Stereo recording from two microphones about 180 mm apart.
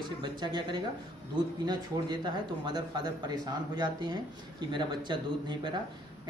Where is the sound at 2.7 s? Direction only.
25° right (ahead or behind).